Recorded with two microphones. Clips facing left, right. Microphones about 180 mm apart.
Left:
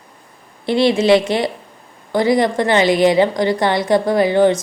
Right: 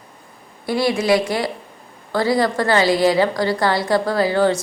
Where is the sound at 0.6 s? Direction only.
25° left (ahead or behind).